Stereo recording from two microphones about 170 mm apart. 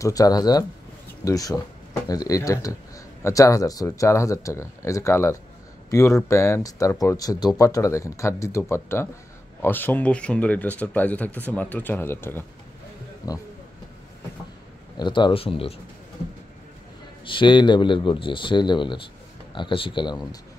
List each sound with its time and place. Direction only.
0.0 s speech: 20° left (ahead or behind)
15.0 s speech: 25° left (ahead or behind)
17.2 s speech: 30° left (ahead or behind)